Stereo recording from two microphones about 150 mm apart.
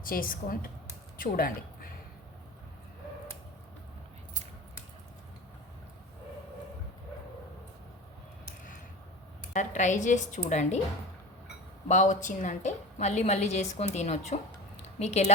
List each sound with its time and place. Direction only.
0.0 s a woman's voice: 70° left (ahead or behind)
9.5 s a woman's voice: 55° left (ahead or behind)
11.9 s a woman's voice: 55° left (ahead or behind)
14.8 s a sound: 45° left (ahead or behind)